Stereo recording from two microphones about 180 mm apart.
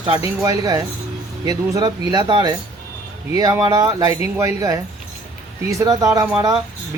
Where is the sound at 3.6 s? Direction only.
20° right (ahead or behind).